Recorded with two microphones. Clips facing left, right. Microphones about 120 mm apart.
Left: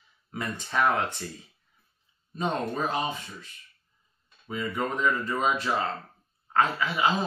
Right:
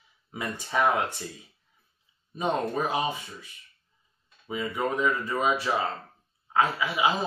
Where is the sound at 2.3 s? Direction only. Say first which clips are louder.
Right 2 dB; 10° right (ahead or behind).